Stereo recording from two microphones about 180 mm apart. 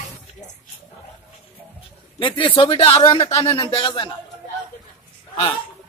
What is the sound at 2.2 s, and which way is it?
Speech, 25° left (ahead or behind).